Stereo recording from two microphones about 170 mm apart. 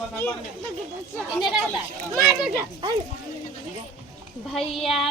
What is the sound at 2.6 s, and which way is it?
Speech, 20° right (ahead or behind).